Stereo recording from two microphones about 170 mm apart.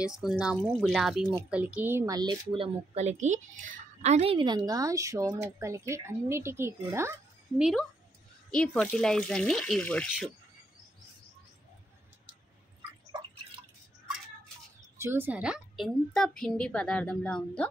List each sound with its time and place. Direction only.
0.0 s a woman's voice: 5° right (ahead or behind)
7.5 s a woman's voice: 5° right (ahead or behind)
15.0 s a woman's voice: 15° right (ahead or behind); by 17.6 s 5° left (ahead or behind)